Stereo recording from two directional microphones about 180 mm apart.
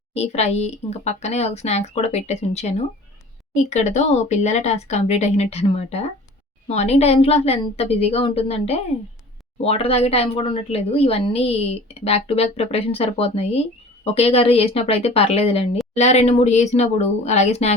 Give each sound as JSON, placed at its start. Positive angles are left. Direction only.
{"t": 0.1, "sound": "a woman's voice", "side_deg": 40}